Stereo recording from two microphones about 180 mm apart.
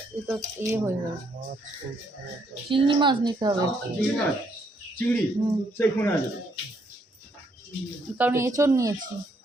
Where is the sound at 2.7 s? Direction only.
25° right (ahead or behind).